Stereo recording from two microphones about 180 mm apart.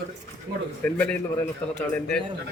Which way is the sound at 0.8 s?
10° left (ahead or behind).